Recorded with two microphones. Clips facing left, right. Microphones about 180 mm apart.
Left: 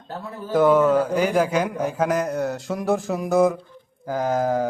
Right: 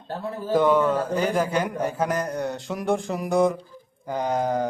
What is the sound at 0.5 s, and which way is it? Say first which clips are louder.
Speech: left 3 dB; 10° left (ahead or behind).